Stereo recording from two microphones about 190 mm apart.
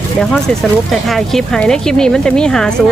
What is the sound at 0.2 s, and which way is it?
Speech, centre (ahead or behind).